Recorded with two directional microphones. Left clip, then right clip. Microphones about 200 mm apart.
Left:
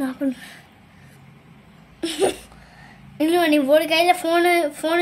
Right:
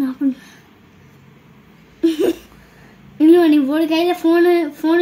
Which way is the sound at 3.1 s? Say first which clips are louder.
Right 6 dB; 55° left (ahead or behind).